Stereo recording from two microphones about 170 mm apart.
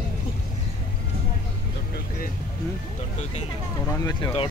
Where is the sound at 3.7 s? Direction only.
20° left (ahead or behind).